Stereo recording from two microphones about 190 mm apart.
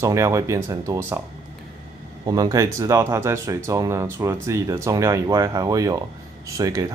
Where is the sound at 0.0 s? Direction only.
15° right (ahead or behind).